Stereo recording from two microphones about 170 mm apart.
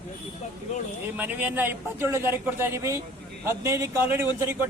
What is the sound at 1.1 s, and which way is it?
A man's voice, 10° right (ahead or behind).